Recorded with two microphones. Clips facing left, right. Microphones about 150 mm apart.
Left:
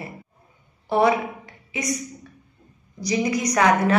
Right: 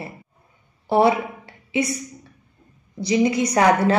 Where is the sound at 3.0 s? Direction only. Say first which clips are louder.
Right 4 dB; 25° right (ahead or behind).